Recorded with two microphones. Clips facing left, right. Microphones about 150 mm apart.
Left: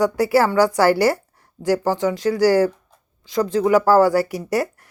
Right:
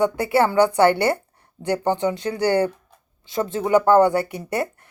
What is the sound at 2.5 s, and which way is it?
Speech, 25° right (ahead or behind).